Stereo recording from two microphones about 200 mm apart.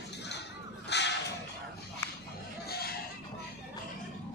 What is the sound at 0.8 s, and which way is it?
Crow, 60° left (ahead or behind).